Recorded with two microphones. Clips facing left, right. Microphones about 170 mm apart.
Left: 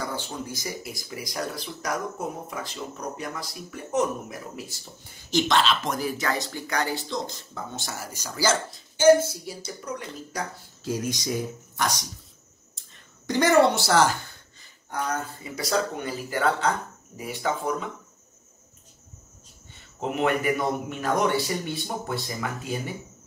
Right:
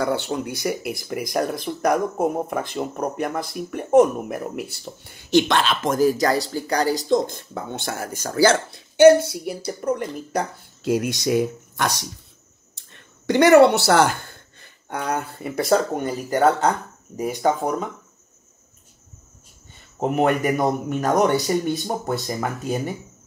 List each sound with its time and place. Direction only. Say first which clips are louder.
0.0 s speech: right 9 dB; 65° right (ahead or behind)
9.7 s speech: right 12 dB; 50° right (ahead or behind)
13.3 s a man's voice: right 7 dB; 65° right (ahead or behind); by 17.8 s 45° right (ahead or behind)
20.0 s a man's voice: right 5 dB; 45° right (ahead or behind)